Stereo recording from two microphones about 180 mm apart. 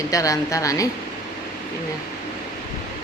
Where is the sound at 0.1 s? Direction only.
20° left (ahead or behind).